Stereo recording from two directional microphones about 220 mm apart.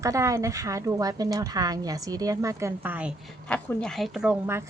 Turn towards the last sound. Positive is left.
turn(degrees=-10)  # may be behind; listen again after turning